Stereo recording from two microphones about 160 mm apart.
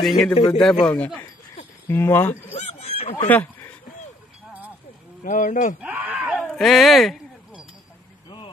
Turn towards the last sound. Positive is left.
turn(degrees=0)  # may be behind; listen again after turning